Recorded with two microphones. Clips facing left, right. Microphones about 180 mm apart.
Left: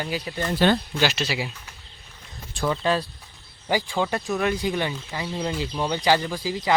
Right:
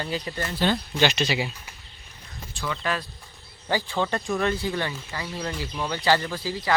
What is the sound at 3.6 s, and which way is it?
Speech, 10° left (ahead or behind).